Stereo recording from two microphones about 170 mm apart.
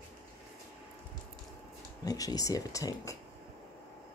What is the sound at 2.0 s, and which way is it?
Speech, 20° left (ahead or behind).